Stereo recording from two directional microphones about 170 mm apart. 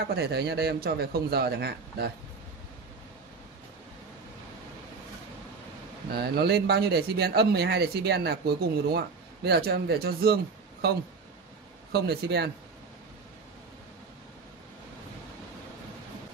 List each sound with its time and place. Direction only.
0.1 s speech: 70° right (ahead or behind)
6.1 s speech: 70° right (ahead or behind)